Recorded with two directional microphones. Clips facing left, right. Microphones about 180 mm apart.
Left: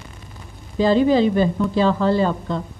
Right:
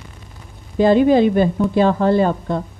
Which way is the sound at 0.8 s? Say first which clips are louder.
Right 3 dB; 55° right (ahead or behind).